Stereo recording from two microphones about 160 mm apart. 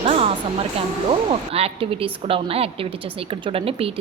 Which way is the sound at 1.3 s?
35° right (ahead or behind).